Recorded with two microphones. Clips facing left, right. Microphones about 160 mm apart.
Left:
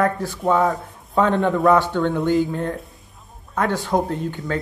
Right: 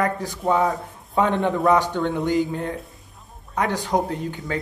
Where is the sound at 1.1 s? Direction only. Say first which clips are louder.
Left 2 dB; 15° right (ahead or behind).